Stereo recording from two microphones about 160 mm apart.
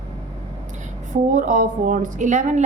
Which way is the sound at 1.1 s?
55° right (ahead or behind).